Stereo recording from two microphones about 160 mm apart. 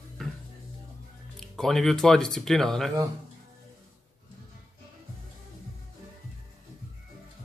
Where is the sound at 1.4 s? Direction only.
5° left (ahead or behind).